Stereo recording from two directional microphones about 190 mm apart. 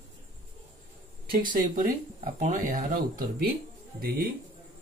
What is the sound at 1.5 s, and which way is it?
Speech, 45° right (ahead or behind).